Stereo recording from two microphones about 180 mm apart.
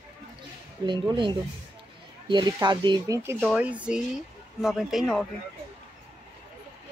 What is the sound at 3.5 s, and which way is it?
Speech, 10° right (ahead or behind).